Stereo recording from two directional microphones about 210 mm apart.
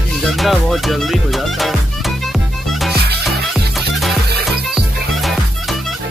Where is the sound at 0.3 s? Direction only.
Centre (ahead or behind).